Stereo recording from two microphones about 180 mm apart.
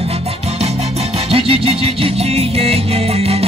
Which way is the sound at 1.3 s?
30° right (ahead or behind).